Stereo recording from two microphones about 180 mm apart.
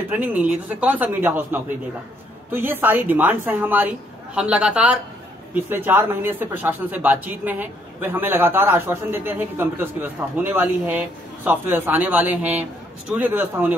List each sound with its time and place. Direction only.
0.1 s a woman's voice: 10° right (ahead or behind)